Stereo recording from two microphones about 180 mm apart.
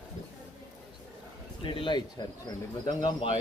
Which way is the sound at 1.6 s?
30° left (ahead or behind).